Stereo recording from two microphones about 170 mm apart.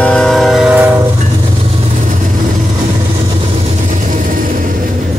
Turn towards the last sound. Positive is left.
turn(degrees=-55)  # may be behind; listen again after turning